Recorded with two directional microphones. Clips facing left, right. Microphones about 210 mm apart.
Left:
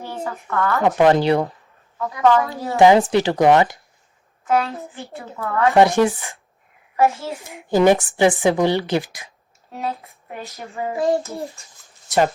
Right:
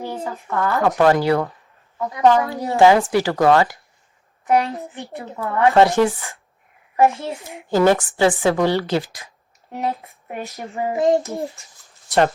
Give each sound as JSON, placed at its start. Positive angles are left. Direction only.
{"t": 0.4, "sound": "a woman's voice", "side_deg": -15}
{"t": 0.8, "sound": "speech", "side_deg": 20}
{"t": 2.1, "sound": "child singing", "side_deg": -20}
{"t": 2.7, "sound": "speech", "side_deg": 20}
{"t": 4.4, "sound": "a woman's voice", "side_deg": -15}
{"t": 5.7, "sound": "a woman's voice", "side_deg": 15}
{"t": 6.9, "sound": "a child's voice", "side_deg": -15}
{"t": 7.7, "sound": "a woman's voice", "side_deg": 15}
{"t": 9.7, "sound": "child singing", "side_deg": -15}